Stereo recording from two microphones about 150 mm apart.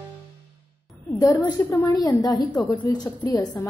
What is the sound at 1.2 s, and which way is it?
A woman's voice, 20° left (ahead or behind).